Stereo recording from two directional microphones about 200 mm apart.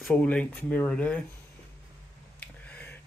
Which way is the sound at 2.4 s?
10° left (ahead or behind).